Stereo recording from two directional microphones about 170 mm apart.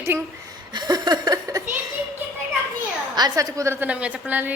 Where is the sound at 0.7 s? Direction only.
25° right (ahead or behind).